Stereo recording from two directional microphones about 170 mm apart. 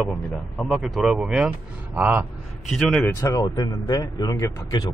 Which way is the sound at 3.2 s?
20° left (ahead or behind).